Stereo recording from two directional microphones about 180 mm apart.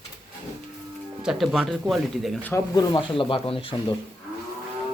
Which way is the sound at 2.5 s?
20° left (ahead or behind).